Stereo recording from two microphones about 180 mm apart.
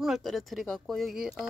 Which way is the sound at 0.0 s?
Centre (ahead or behind).